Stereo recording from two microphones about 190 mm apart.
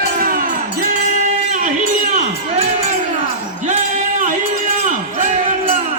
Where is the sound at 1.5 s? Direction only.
40° right (ahead or behind).